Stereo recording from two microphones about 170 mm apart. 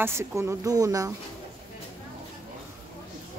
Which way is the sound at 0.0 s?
15° right (ahead or behind).